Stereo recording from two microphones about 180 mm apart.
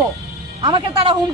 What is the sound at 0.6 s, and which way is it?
Speech, 25° right (ahead or behind).